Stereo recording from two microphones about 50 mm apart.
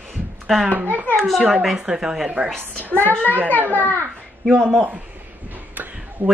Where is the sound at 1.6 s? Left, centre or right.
Centre.